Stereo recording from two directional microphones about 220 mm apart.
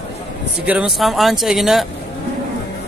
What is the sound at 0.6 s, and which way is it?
A man's voice, 5° right (ahead or behind).